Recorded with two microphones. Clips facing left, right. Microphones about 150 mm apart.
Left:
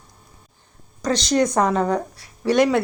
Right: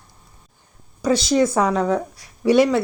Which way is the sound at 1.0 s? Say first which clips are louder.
Right 2 dB; 5° right (ahead or behind).